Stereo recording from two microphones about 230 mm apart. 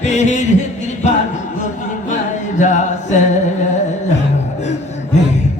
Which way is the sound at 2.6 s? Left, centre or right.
Left.